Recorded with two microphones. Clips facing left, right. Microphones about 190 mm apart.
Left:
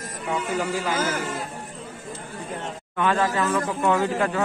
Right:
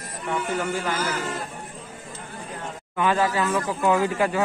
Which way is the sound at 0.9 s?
50° left (ahead or behind).